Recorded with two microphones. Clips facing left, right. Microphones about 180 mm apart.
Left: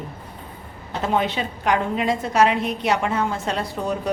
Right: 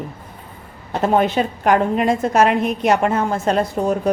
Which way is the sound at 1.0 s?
50° right (ahead or behind).